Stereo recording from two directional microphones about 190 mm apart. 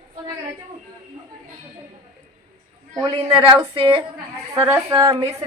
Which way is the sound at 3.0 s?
30° right (ahead or behind).